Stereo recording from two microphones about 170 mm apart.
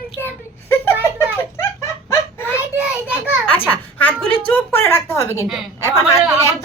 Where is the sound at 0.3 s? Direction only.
10° left (ahead or behind).